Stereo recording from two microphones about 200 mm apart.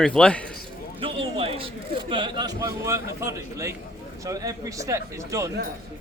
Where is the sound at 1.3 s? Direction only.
25° right (ahead or behind).